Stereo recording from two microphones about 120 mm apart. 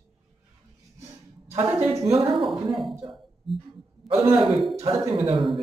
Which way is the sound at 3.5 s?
Centre (ahead or behind).